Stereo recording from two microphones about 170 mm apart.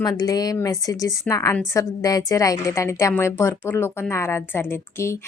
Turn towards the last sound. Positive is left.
turn(degrees=15)  # may be behind; listen again after turning